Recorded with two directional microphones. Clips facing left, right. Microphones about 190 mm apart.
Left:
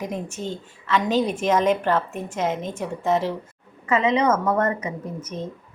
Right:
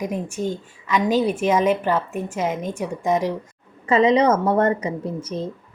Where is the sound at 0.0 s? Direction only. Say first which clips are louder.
Right 4 dB; 10° right (ahead or behind).